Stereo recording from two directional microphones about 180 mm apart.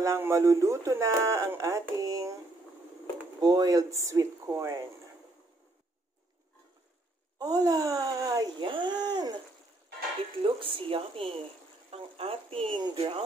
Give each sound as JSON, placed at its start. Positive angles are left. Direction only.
{"t": 0.0, "sound": "speech", "side_deg": -15}
{"t": 3.3, "sound": "speech", "side_deg": -20}
{"t": 7.3, "sound": "speech", "side_deg": -20}
{"t": 10.4, "sound": "speech", "side_deg": -30}